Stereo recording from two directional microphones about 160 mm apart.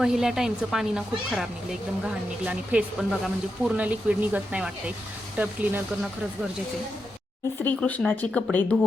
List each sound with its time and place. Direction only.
0.0 s speech: 5° right (ahead or behind)
7.6 s speech: 10° left (ahead or behind)